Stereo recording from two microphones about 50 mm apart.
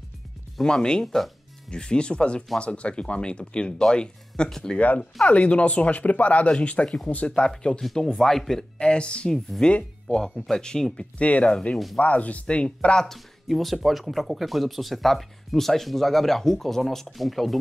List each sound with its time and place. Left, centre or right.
0.6 s speech: centre
1.0 s speech: centre
1.7 s speech: centre
4.7 s speech: left; by 8.6 s centre
8.7 s speech: centre
10.0 s speech: centre
11.1 s speech: left
13.0 s speech: centre